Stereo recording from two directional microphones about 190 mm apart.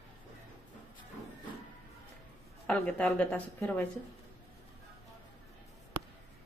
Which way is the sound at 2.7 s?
5° left (ahead or behind).